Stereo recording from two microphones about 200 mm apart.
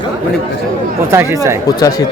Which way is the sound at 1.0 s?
15° right (ahead or behind).